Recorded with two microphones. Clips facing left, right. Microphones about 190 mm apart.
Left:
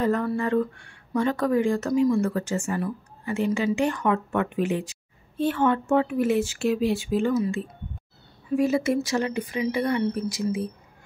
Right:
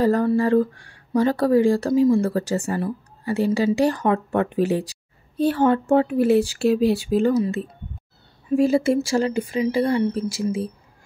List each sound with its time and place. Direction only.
0.0 s a woman's voice: 30° right (ahead or behind)